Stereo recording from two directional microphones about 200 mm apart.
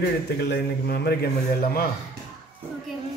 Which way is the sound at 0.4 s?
55° left (ahead or behind).